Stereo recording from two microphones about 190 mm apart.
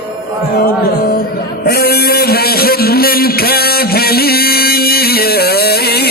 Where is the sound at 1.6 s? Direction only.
55° left (ahead or behind).